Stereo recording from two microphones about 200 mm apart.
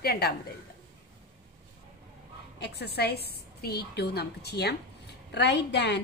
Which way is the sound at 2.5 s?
55° left (ahead or behind).